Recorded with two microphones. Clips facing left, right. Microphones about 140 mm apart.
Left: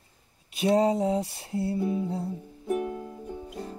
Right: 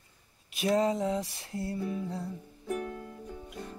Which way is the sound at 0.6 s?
35° left (ahead or behind).